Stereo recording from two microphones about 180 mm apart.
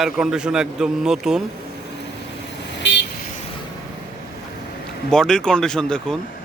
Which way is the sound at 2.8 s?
75° left (ahead or behind).